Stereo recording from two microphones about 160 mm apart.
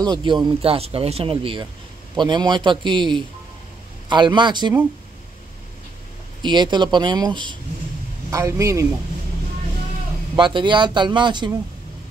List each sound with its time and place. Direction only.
0.0 s speech: 30° right (ahead or behind)
6.4 s speech: 30° right (ahead or behind)
10.3 s speech: 30° right (ahead or behind)